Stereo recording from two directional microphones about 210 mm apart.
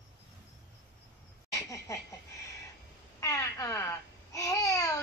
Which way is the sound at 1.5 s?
15° left (ahead or behind).